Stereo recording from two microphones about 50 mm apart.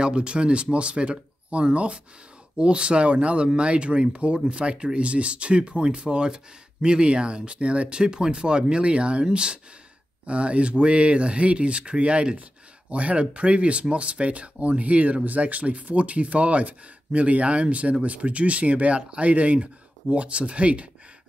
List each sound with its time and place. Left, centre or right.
0.0 s speech: centre